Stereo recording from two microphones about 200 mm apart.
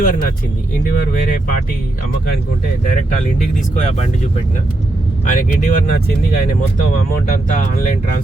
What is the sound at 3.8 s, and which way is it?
Speech, 35° left (ahead or behind).